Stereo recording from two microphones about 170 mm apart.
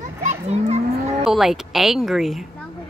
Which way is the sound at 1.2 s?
Centre (ahead or behind).